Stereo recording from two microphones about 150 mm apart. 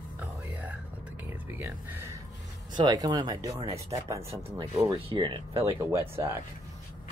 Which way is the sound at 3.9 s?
20° right (ahead or behind).